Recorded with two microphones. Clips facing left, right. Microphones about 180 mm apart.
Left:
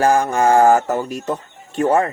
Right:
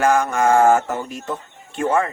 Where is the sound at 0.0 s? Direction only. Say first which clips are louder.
Left 2 dB; 35° left (ahead or behind).